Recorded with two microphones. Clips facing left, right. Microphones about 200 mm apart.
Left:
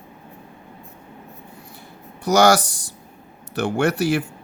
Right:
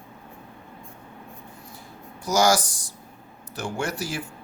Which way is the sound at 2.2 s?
65° left (ahead or behind).